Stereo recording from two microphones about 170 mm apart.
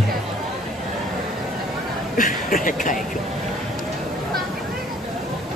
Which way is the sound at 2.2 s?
55° left (ahead or behind).